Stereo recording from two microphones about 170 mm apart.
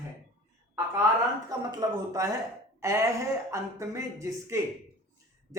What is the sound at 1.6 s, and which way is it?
Speech, 25° right (ahead or behind).